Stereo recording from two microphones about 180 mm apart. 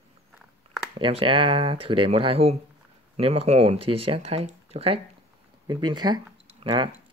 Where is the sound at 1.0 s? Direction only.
30° right (ahead or behind).